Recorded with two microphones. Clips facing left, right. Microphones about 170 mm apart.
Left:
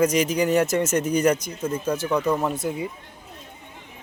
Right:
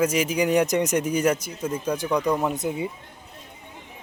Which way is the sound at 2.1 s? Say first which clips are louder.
Even; 5° left (ahead or behind).